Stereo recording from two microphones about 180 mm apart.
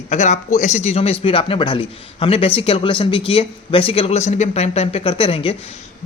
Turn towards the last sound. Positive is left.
turn(degrees=30)  # may be behind; listen again after turning